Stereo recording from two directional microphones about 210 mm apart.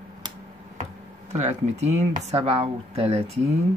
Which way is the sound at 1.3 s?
30° right (ahead or behind).